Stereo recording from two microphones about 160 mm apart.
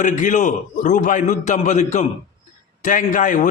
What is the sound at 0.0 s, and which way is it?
A man's voice, 50° left (ahead or behind).